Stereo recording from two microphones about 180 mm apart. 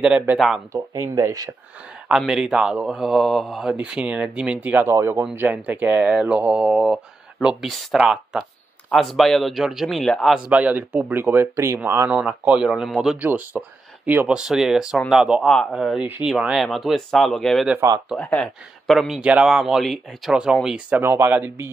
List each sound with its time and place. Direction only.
0.7 s speech: 15° right (ahead or behind)
2.0 s speech: centre (ahead or behind)
17.7 s speech: 20° right (ahead or behind)
18.1 s speech: 5° left (ahead or behind); by 21.6 s 10° right (ahead or behind)